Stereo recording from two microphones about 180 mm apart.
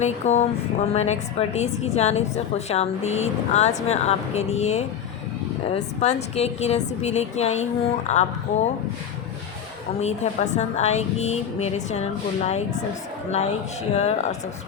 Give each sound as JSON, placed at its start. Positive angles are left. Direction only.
{"t": 0.0, "sound": "a woman's voice", "side_deg": 40}
{"t": 10.0, "sound": "a woman's voice", "side_deg": 40}